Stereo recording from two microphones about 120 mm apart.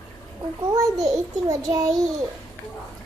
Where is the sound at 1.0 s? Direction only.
30° right (ahead or behind).